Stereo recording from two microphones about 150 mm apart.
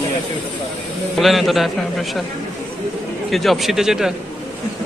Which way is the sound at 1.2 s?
Centre (ahead or behind).